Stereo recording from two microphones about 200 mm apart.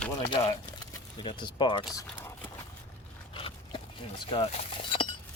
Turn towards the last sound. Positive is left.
turn(degrees=30)  # may be behind; listen again after turning